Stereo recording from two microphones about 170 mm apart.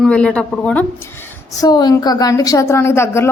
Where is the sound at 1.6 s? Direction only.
25° left (ahead or behind).